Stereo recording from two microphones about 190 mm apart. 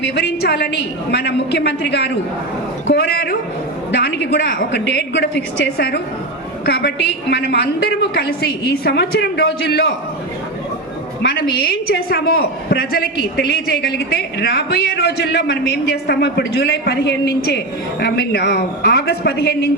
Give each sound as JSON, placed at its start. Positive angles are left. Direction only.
{"t": 0.1, "sound": "a woman's voice", "side_deg": 60}
{"t": 11.2, "sound": "a woman's voice", "side_deg": 55}